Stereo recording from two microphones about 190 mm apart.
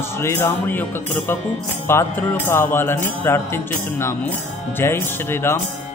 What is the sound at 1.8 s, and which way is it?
Music, 10° left (ahead or behind).